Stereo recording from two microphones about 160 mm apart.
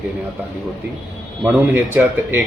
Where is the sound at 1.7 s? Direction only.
15° right (ahead or behind).